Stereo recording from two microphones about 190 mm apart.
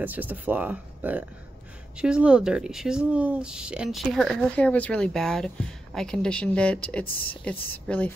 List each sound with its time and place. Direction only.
0.0 s speech: 10° right (ahead or behind); by 7.1 s 5° left (ahead or behind)
7.1 s speech: 50° left (ahead or behind)
7.8 s speech: 10° left (ahead or behind)